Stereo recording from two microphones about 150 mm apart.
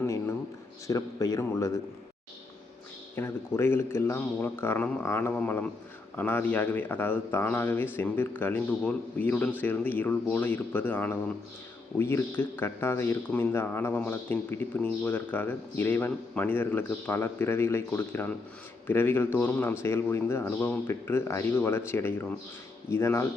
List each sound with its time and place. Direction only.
0.0 s speech: 15° left (ahead or behind)
3.2 s speech: 15° left (ahead or behind)